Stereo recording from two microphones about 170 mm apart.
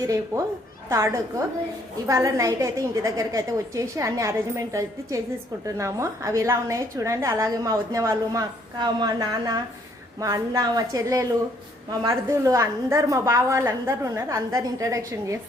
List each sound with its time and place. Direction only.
0.0 s a woman's voice: 20° right (ahead or behind)